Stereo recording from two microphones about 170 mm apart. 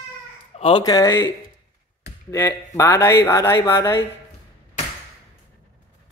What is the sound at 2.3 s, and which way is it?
Speech, 15° left (ahead or behind).